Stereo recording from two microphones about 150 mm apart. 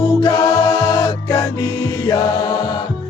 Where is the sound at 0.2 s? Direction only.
25° left (ahead or behind).